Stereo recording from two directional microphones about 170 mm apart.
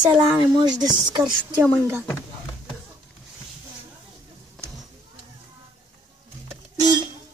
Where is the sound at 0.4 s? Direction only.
25° right (ahead or behind).